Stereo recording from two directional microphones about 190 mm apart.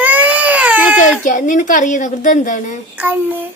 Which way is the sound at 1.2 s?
45° left (ahead or behind).